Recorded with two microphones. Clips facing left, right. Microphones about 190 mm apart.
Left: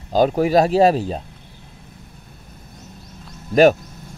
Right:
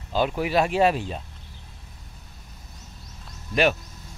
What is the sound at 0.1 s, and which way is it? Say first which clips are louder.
Speech: left 8 dB; 40° left (ahead or behind).